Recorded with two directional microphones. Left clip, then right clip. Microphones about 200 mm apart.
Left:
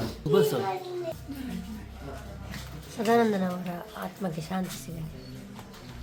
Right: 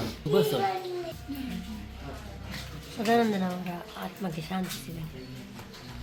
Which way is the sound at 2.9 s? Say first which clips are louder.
Left 2 dB; 15° left (ahead or behind).